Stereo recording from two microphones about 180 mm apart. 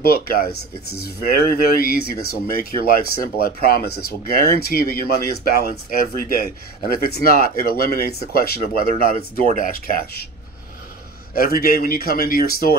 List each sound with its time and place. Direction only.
0.0 s speech: 55° left (ahead or behind)
11.3 s speech: 55° left (ahead or behind)